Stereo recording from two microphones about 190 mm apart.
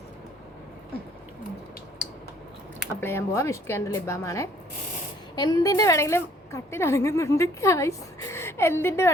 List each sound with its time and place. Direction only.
2.9 s a woman's voice: 15° left (ahead or behind)